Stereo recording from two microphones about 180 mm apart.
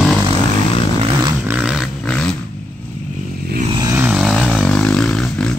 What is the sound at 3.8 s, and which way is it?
Vehicle, 15° right (ahead or behind).